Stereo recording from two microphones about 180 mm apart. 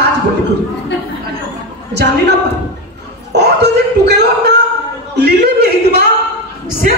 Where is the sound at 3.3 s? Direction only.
70° right (ahead or behind).